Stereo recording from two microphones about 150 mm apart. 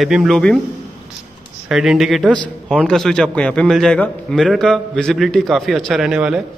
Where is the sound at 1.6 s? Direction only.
5° right (ahead or behind).